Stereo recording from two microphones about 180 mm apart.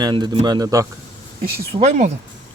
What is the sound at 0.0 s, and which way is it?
Speech, 25° right (ahead or behind).